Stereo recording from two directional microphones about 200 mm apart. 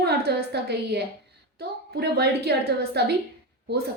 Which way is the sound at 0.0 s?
55° right (ahead or behind).